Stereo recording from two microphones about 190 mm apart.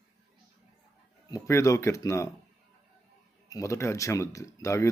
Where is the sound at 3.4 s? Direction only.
15° left (ahead or behind).